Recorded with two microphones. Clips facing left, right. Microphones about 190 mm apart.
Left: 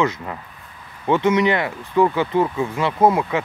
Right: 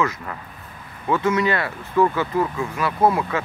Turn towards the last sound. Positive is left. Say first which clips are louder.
# left 2 dB
turn(degrees=20)  # may be behind; listen again after turning